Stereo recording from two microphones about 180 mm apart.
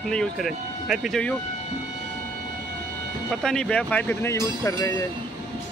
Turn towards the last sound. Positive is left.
turn(degrees=15)  # may be behind; listen again after turning